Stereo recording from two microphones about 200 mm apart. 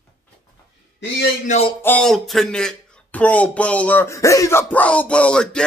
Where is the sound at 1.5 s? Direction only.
30° left (ahead or behind).